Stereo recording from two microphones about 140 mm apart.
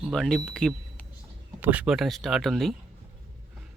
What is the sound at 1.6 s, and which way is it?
Speech, 10° right (ahead or behind).